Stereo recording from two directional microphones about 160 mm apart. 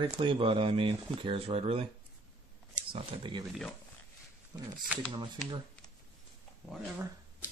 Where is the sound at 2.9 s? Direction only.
30° right (ahead or behind).